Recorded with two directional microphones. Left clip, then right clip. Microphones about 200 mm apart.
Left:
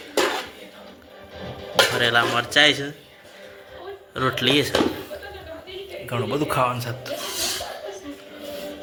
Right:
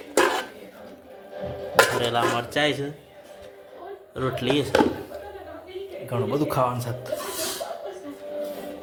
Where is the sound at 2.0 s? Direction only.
5° right (ahead or behind).